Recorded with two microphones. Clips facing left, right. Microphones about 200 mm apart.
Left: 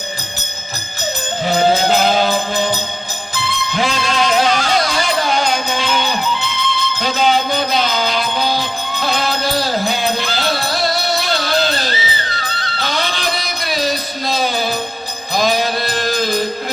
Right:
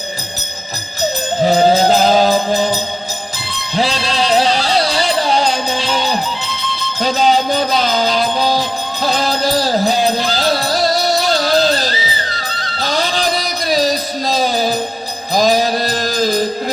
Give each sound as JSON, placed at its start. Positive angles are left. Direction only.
{"t": 1.4, "sound": "music", "side_deg": -40}